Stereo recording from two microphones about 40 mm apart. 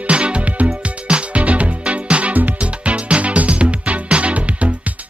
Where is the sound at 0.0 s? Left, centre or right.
Right.